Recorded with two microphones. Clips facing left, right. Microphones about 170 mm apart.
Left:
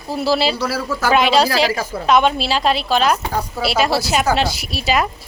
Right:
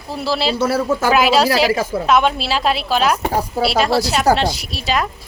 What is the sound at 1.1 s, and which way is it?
A woman's voice, 5° right (ahead or behind).